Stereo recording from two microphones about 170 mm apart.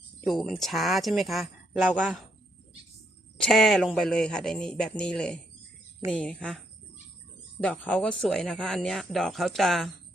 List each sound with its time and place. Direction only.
0.3 s speech: centre (ahead or behind)
3.3 s speech: 5° left (ahead or behind)
7.6 s speech: 10° left (ahead or behind)